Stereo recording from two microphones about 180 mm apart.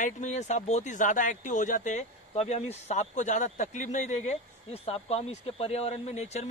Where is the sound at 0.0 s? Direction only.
40° left (ahead or behind).